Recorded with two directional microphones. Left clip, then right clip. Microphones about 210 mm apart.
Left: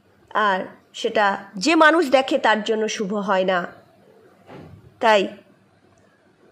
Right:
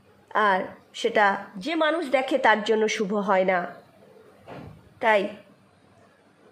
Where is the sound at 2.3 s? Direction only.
5° left (ahead or behind).